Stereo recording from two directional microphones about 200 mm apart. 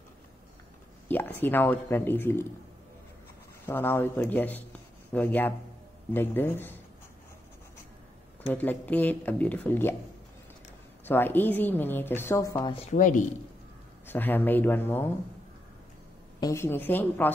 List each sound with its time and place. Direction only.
1.1 s a woman's voice: 10° left (ahead or behind)
3.6 s a woman's voice: 10° left (ahead or behind)
8.4 s a woman's voice: 10° left (ahead or behind)
11.1 s a woman's voice: 10° left (ahead or behind); by 12.9 s 25° left (ahead or behind)
12.9 s speech: 40° left (ahead or behind)
14.0 s a woman's voice: 10° left (ahead or behind)
16.3 s a woman's voice: 15° left (ahead or behind)